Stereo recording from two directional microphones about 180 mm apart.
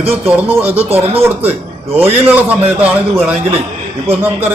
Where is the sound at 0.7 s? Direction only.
35° right (ahead or behind).